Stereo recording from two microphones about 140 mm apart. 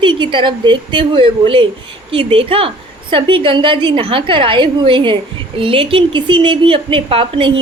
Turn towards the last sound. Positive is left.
turn(degrees=-40)  # may be behind; listen again after turning